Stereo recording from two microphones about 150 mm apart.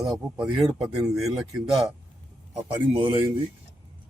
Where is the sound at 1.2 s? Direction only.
25° right (ahead or behind).